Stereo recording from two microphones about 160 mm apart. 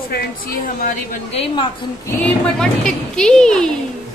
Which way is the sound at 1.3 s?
35° left (ahead or behind).